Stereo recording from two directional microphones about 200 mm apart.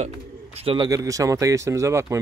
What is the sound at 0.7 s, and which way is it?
A man's voice, 20° right (ahead or behind).